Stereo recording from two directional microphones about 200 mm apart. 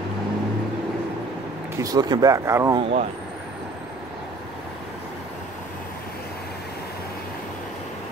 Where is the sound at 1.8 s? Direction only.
20° right (ahead or behind).